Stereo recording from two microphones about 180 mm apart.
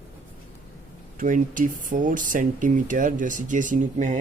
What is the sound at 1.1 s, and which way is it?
Speech, 45° right (ahead or behind).